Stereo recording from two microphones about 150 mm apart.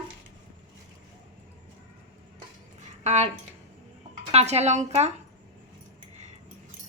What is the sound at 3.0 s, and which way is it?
Speech, 50° right (ahead or behind).